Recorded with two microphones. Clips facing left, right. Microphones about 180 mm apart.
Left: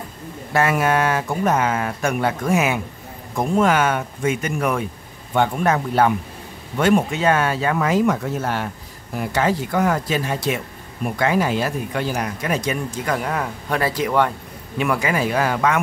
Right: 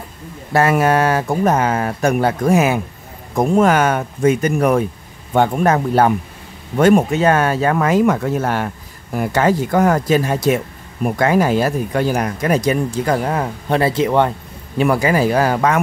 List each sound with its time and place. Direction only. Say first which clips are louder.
0.5 s speech: right 4 dB; 40° right (ahead or behind)
14.8 s speech: right 6 dB; 35° right (ahead or behind)